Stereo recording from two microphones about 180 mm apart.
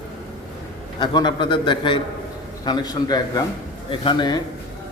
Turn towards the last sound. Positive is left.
turn(degrees=25)  # may be behind; listen again after turning